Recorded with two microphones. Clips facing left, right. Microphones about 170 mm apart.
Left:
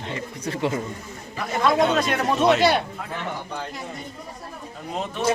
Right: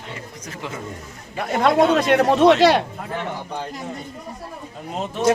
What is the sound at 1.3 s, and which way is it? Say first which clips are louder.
Speech: right 3 dB; 65° right (ahead or behind).